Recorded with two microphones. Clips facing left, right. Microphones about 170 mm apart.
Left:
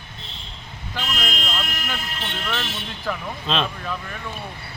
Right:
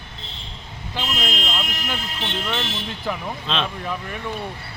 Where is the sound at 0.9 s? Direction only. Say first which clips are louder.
Right 2 dB; 20° right (ahead or behind).